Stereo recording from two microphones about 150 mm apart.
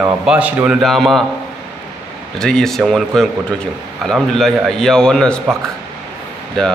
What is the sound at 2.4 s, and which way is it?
Speech, 5° left (ahead or behind).